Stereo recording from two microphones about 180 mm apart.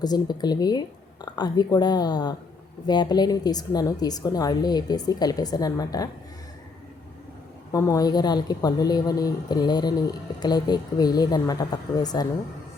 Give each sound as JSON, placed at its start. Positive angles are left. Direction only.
{"t": 0.0, "sound": "speech", "side_deg": 20}
{"t": 7.7, "sound": "speech", "side_deg": 20}